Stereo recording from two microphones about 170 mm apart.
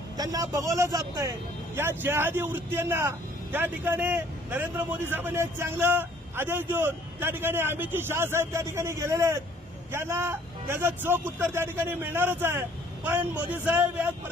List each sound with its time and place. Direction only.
0.2 s a man's voice: 20° right (ahead or behind)